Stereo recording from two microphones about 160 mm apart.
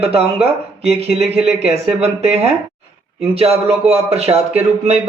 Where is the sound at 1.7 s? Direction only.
40° right (ahead or behind).